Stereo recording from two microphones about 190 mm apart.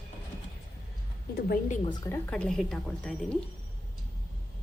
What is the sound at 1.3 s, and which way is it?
Speech, 50° left (ahead or behind).